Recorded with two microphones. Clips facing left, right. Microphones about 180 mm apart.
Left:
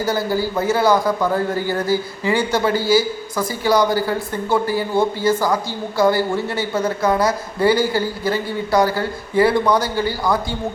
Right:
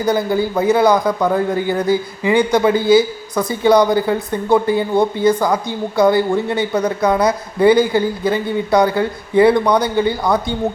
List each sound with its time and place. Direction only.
0.0 s a man's voice: 20° right (ahead or behind)